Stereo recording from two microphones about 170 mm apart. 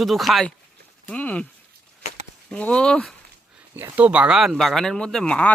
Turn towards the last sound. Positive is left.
turn(degrees=5)  # may be behind; listen again after turning